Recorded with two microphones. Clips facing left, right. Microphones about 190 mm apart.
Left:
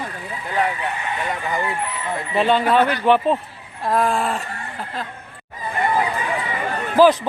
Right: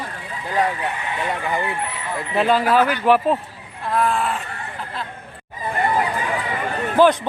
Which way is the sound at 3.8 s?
40° left (ahead or behind).